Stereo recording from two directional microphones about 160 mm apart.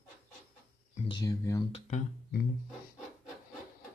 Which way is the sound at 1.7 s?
40° left (ahead or behind).